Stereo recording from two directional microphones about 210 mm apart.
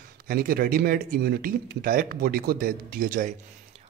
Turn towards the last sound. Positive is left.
turn(degrees=-45)  # may be behind; listen again after turning